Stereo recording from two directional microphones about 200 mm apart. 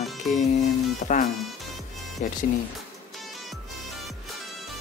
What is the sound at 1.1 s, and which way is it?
Speech, 40° left (ahead or behind).